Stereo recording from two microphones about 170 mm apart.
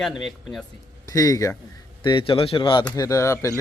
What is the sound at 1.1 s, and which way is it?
Speech, 20° left (ahead or behind).